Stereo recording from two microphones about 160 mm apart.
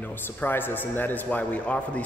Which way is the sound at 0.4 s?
10° left (ahead or behind).